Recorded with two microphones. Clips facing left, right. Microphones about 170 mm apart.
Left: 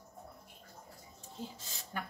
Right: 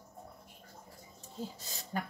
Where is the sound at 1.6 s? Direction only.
40° right (ahead or behind).